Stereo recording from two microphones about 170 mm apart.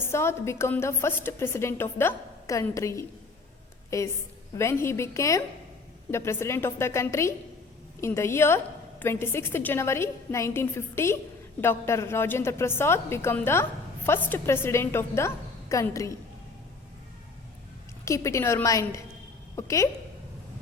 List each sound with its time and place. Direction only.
0.0 s a woman's voice: 15° left (ahead or behind)
18.0 s a woman's voice: 20° left (ahead or behind)